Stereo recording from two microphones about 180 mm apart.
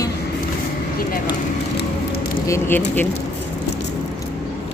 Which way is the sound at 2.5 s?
10° left (ahead or behind).